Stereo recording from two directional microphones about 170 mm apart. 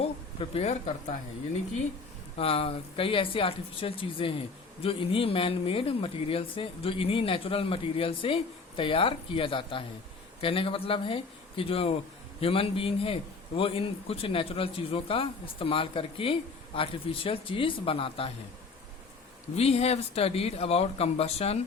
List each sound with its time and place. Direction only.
0.0 s speech: 35° left (ahead or behind)
2.4 s speech: 35° left (ahead or behind)
19.5 s speech: 40° left (ahead or behind)